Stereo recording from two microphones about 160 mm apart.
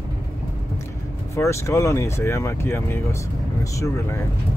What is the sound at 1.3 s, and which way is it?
Speech, 20° left (ahead or behind).